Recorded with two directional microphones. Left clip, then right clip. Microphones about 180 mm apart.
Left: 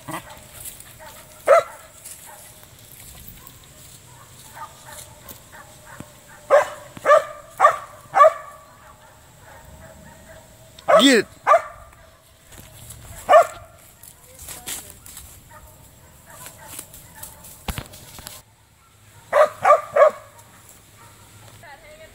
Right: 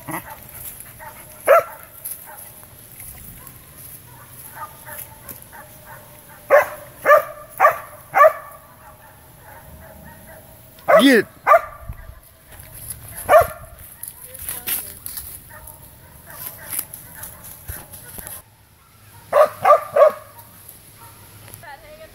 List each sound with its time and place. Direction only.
1.0 s dog: 50° left (ahead or behind)
1.4 s dog: centre (ahead or behind)
4.6 s dog: 55° left (ahead or behind)
6.4 s dog: 5° right (ahead or behind)
10.9 s dog: centre (ahead or behind)
14.4 s a sound: 15° left (ahead or behind)
19.3 s a sound: 5° right (ahead or behind)